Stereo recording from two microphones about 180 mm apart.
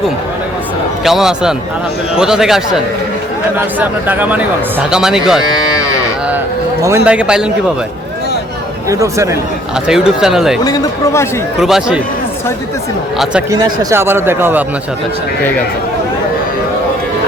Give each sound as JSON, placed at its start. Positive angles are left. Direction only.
{"t": 1.0, "sound": "speech", "side_deg": 0}
{"t": 6.8, "sound": "speech", "side_deg": -10}
{"t": 8.9, "sound": "speech", "side_deg": -15}
{"t": 9.8, "sound": "speech", "side_deg": -5}
{"t": 10.6, "sound": "speech", "side_deg": 20}
{"t": 11.6, "sound": "speech", "side_deg": 0}
{"t": 13.5, "sound": "speech", "side_deg": -15}